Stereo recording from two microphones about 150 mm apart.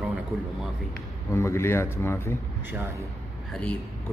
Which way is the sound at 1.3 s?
20° left (ahead or behind).